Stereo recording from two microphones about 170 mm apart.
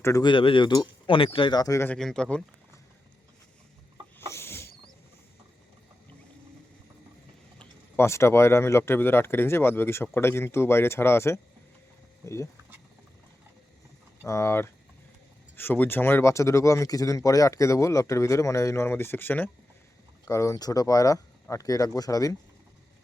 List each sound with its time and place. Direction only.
0.0 s speech: 20° left (ahead or behind)
2.0 s speech: 5° left (ahead or behind)
4.3 s chicken: 15° left (ahead or behind)
7.6 s speech: 15° left (ahead or behind)
14.3 s speech: 15° left (ahead or behind)